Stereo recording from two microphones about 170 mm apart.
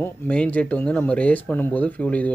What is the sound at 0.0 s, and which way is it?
A man's voice, 10° left (ahead or behind).